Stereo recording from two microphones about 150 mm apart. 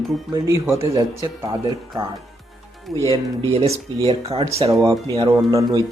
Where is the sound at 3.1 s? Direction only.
40° right (ahead or behind).